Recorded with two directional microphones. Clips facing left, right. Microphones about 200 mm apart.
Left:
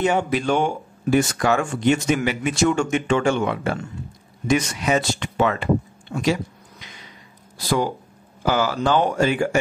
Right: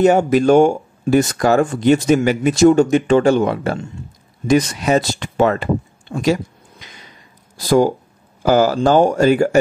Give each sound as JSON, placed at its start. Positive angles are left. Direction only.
{"t": 0.0, "sound": "speech", "side_deg": -40}
{"t": 7.5, "sound": "speech", "side_deg": -45}